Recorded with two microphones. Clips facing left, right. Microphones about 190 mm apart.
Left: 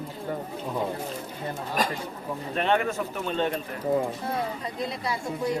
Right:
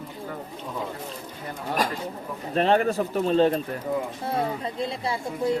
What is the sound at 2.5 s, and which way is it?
A woman's voice, 35° right (ahead or behind).